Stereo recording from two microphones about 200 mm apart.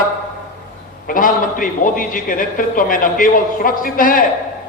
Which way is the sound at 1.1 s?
45° left (ahead or behind).